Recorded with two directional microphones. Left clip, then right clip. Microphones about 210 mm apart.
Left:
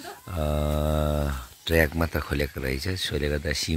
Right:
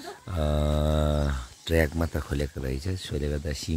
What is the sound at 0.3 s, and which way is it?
Speech, centre (ahead or behind).